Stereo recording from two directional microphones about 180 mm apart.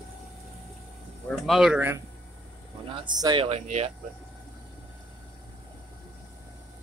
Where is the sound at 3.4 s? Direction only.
35° right (ahead or behind).